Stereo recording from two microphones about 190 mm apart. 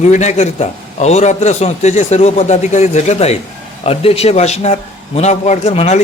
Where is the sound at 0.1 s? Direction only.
40° left (ahead or behind).